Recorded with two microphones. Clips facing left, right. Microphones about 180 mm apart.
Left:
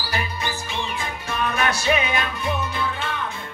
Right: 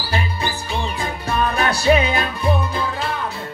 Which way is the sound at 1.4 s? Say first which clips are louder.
Right 3 dB; 35° right (ahead or behind).